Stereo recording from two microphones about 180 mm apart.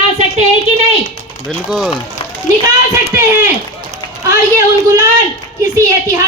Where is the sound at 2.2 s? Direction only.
35° left (ahead or behind).